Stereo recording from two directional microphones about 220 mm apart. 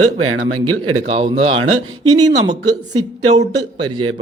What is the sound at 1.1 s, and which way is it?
Speech, 25° right (ahead or behind).